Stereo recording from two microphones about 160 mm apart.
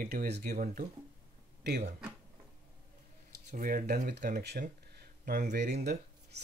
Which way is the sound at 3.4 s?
60° right (ahead or behind).